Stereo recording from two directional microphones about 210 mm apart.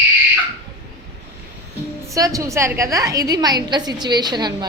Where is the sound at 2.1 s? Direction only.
15° right (ahead or behind).